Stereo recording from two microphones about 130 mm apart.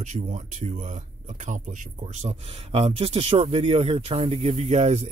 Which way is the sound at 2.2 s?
55° right (ahead or behind).